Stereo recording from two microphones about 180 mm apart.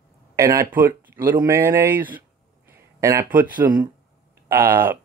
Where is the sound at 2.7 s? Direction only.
15° right (ahead or behind).